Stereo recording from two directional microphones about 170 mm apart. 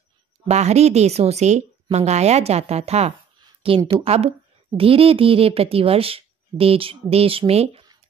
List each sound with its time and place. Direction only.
0.5 s speech: 40° right (ahead or behind)